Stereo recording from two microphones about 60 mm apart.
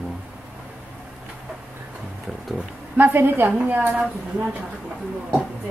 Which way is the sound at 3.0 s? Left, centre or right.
Right.